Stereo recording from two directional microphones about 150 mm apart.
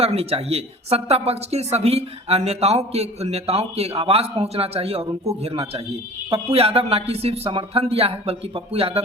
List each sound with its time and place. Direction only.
0.0 s speech: 45° right (ahead or behind)